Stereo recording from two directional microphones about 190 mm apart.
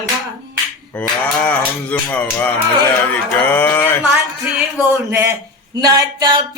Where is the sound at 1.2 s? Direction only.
10° left (ahead or behind).